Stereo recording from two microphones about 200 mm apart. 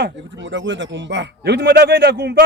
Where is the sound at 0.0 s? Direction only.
65° right (ahead or behind).